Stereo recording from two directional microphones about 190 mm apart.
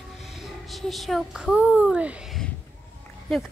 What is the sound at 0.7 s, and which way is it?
A child's voice, centre (ahead or behind).